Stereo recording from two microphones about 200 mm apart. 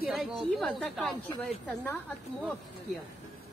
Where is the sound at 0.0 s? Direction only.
5° right (ahead or behind).